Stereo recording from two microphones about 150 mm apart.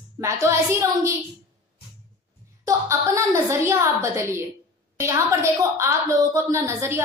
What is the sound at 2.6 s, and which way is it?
A woman's voice, 20° right (ahead or behind).